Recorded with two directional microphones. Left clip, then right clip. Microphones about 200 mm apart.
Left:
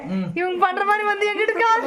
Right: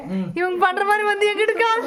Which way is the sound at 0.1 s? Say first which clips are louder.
Right 1 dB; centre (ahead or behind).